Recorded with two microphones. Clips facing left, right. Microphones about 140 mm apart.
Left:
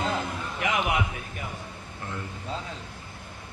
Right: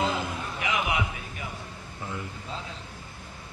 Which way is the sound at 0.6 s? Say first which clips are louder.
Left 2 dB; 50° left (ahead or behind).